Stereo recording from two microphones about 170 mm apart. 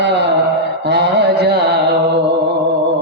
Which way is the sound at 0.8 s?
75° right (ahead or behind).